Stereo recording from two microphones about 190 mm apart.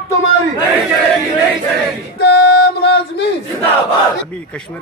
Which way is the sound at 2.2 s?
60° left (ahead or behind).